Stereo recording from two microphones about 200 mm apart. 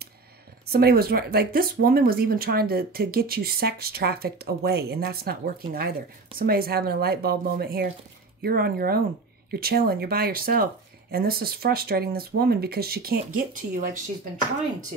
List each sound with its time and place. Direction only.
0.7 s speech: 50° right (ahead or behind)